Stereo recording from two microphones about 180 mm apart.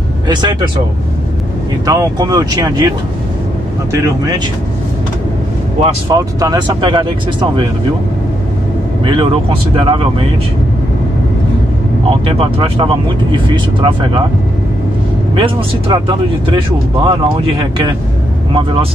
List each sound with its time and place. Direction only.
0.3 s speech: 25° right (ahead or behind)
1.9 s speech: 20° right (ahead or behind)
3.9 s speech: 15° right (ahead or behind)
5.8 s speech: 20° right (ahead or behind)
9.0 s speech: 30° right (ahead or behind)
12.1 s speech: 30° right (ahead or behind)
15.3 s speech: 30° right (ahead or behind)